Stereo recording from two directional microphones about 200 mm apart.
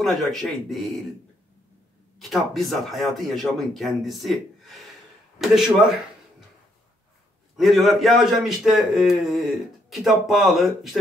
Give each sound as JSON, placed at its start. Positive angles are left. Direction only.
{"t": 0.0, "sound": "a man's voice", "side_deg": 0}
{"t": 2.2, "sound": "a man's voice", "side_deg": 0}
{"t": 7.5, "sound": "a man's voice", "side_deg": 0}